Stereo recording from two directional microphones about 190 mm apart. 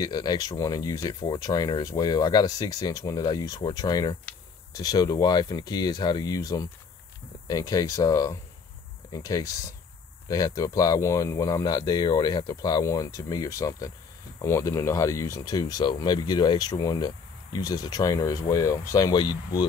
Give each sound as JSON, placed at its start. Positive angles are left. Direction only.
{"t": 0.0, "sound": "speech", "side_deg": 20}